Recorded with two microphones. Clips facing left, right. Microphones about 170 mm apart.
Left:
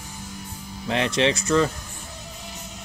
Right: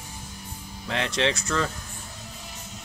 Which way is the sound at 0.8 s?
15° left (ahead or behind).